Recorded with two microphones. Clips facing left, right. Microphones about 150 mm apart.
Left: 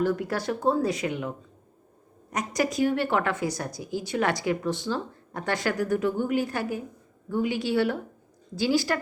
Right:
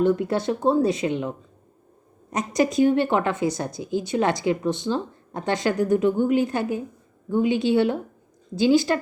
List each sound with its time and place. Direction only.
0.0 s speech: 20° right (ahead or behind)
2.3 s speech: 25° right (ahead or behind)